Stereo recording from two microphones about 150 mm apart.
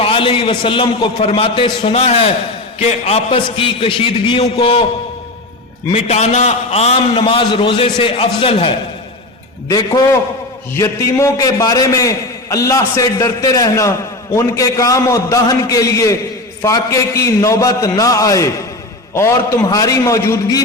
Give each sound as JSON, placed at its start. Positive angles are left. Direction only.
{"t": 0.0, "sound": "a man's voice", "side_deg": 35}
{"t": 5.9, "sound": "a man's voice", "side_deg": 45}
{"t": 9.6, "sound": "a man's voice", "side_deg": 25}